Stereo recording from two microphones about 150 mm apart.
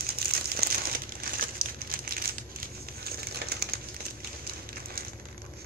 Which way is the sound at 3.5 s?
90° right.